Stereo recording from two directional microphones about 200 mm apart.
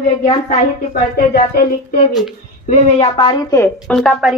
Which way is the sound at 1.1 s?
50° left (ahead or behind).